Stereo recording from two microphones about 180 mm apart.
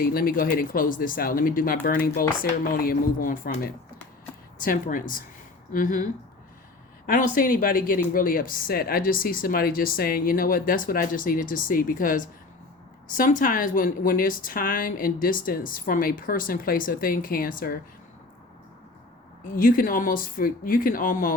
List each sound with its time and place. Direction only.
0.0 s speech: 55° left (ahead or behind)
7.1 s speech: 50° left (ahead or behind)
19.5 s speech: 50° left (ahead or behind)